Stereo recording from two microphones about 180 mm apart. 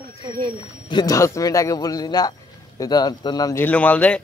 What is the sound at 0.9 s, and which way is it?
A man's voice, 20° left (ahead or behind).